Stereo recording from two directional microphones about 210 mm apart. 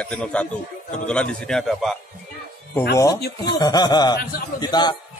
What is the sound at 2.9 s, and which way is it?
Speech, 15° left (ahead or behind).